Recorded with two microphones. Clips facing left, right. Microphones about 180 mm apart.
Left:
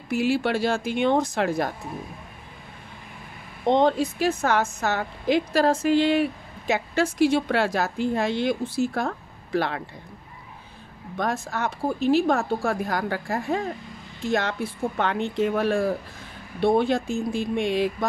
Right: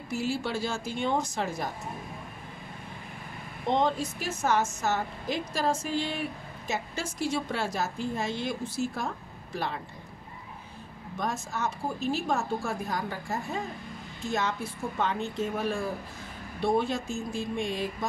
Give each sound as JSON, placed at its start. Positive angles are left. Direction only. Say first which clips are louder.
{"t": 0.1, "sound": "a woman's voice", "louder": "left 8 dB", "side_deg": 65}
{"t": 3.6, "sound": "a woman's voice", "louder": "left 7 dB", "side_deg": 65}
{"t": 11.1, "sound": "a woman's voice", "louder": "left 5 dB", "side_deg": 70}